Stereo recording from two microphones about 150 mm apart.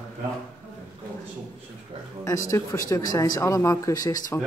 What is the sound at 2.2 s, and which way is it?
Speech, 20° left (ahead or behind).